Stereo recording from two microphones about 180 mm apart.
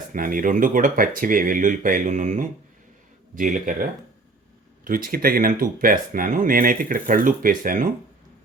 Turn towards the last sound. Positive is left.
turn(degrees=-50)  # may be behind; listen again after turning